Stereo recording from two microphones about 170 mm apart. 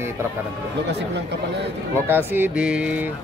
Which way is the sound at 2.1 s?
10° right (ahead or behind).